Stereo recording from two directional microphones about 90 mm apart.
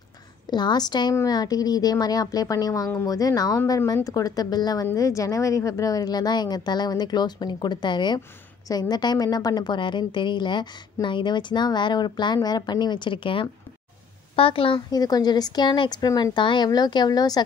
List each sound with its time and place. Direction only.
0.5 s a woman's voice: 55° left (ahead or behind)
8.6 s a woman's voice: 45° left (ahead or behind); by 13.5 s 70° left (ahead or behind)
14.3 s a woman's voice: 90° left
14.9 s a woman's voice: 45° left (ahead or behind)